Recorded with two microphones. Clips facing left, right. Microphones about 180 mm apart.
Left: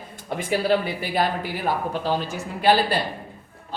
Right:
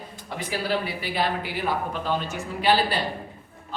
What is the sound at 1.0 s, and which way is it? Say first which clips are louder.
Speech: left 3 dB; 45° left (ahead or behind).